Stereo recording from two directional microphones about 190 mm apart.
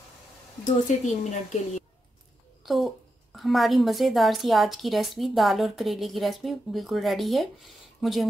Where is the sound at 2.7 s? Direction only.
Centre (ahead or behind).